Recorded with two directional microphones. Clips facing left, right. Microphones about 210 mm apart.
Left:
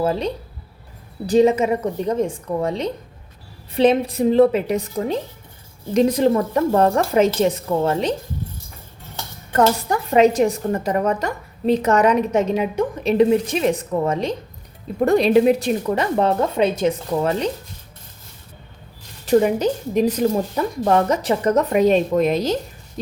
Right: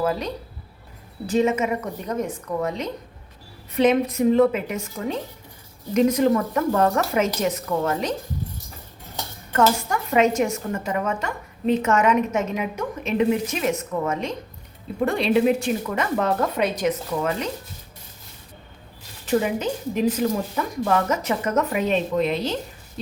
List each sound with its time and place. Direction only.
0.0 s speech: 30° left (ahead or behind)
1.3 s a woman's voice: 35° left (ahead or behind)
9.5 s a woman's voice: 35° left (ahead or behind)
19.2 s a woman's voice: 40° left (ahead or behind)